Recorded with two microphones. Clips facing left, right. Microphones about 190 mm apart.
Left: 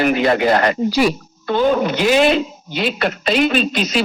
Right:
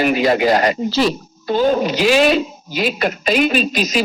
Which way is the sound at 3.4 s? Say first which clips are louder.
Left 1 dB; 15° right (ahead or behind).